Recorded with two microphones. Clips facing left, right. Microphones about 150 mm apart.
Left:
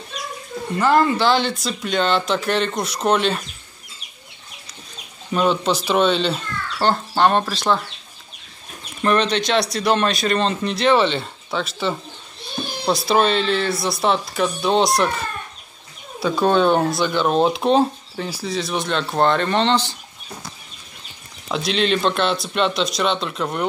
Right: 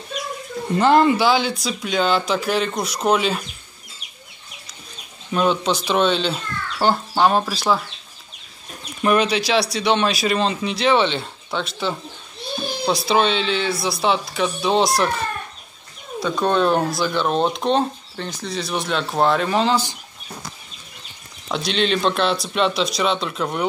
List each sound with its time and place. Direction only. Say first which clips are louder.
0.7 s speech: right 2 dB; 20° right (ahead or behind)
1.2 s speech: even; 5° right (ahead or behind)
5.3 s speech: even; centre (ahead or behind)
9.0 s speech: even; 10° right (ahead or behind)
21.5 s speech: left 1 dB; centre (ahead or behind)